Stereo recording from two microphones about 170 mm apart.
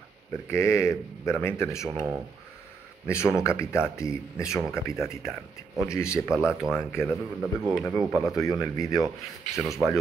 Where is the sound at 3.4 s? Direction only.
15° left (ahead or behind).